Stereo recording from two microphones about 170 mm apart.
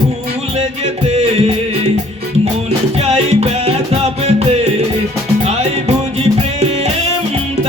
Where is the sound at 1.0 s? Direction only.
40° right (ahead or behind).